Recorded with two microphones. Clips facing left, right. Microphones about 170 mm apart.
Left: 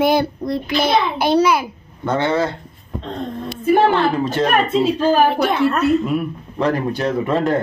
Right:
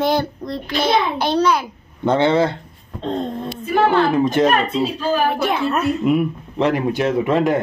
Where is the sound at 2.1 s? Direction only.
20° right (ahead or behind).